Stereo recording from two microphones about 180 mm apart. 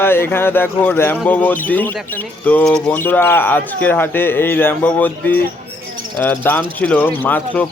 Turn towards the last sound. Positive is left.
turn(degrees=10)  # may be behind; listen again after turning